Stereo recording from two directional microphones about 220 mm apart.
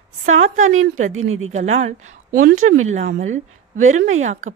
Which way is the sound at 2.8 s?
35° right (ahead or behind).